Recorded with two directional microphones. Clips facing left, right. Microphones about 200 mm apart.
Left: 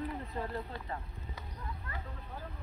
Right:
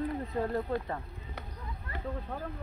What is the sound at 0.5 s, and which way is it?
Speech, 50° right (ahead or behind).